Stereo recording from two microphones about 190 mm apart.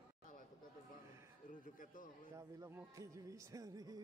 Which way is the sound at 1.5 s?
45° left (ahead or behind).